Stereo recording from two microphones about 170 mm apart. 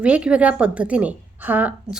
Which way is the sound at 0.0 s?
5° right (ahead or behind).